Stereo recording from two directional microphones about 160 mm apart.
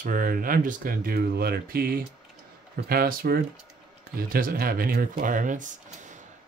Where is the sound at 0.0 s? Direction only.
60° right (ahead or behind).